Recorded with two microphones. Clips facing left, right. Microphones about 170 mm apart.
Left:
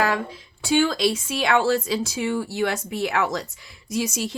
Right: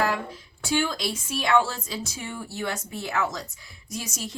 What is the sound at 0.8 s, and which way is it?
A woman's voice, 90° left.